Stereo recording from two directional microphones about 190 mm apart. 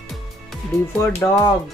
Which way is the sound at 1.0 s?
15° left (ahead or behind).